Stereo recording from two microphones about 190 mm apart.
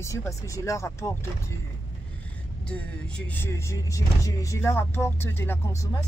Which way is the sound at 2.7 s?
5° left (ahead or behind).